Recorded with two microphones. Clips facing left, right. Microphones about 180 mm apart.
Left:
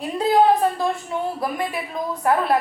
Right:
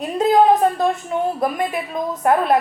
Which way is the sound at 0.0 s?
20° right (ahead or behind).